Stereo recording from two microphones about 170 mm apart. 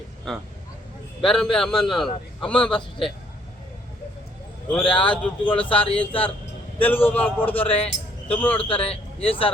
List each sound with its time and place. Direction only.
0.3 s a man's voice: centre (ahead or behind)
4.7 s speech: 5° left (ahead or behind)
8.5 s a man's voice: 35° left (ahead or behind)